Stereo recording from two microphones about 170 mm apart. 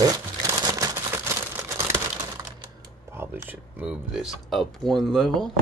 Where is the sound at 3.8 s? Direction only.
5° right (ahead or behind).